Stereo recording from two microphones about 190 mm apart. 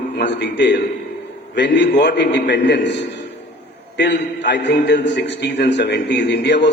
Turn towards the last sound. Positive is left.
turn(degrees=65)  # may be behind; listen again after turning